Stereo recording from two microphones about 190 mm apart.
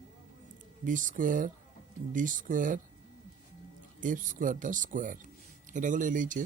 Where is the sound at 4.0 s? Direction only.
45° right (ahead or behind).